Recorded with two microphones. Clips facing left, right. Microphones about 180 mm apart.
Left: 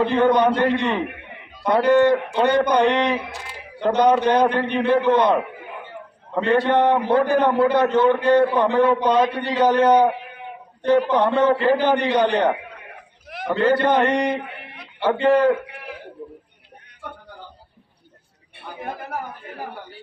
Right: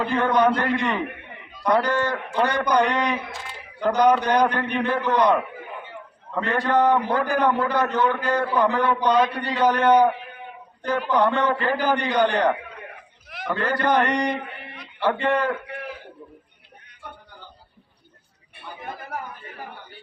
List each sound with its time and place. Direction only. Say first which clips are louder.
0.0 s a man's voice: left 3 dB; 25° left (ahead or behind)
10.8 s a man's voice: left 4 dB; 30° left (ahead or behind)